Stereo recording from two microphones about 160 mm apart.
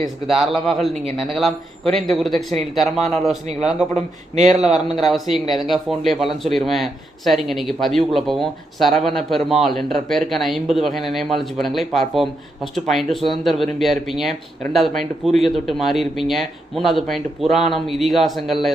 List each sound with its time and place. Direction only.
0.3 s a man's voice: centre (ahead or behind)
3.9 s speech: 45° right (ahead or behind)
4.5 s a man's voice: centre (ahead or behind)